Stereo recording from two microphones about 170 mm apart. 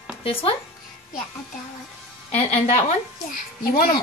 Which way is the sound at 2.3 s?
40° left (ahead or behind).